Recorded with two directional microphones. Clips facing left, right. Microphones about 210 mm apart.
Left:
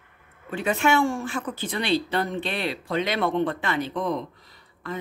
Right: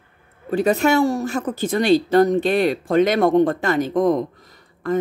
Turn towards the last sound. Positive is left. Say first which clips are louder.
# right 12 dB
turn(degrees=-50)  # may be behind; listen again after turning